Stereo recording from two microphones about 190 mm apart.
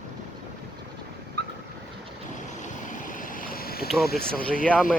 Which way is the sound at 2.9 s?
45° left (ahead or behind).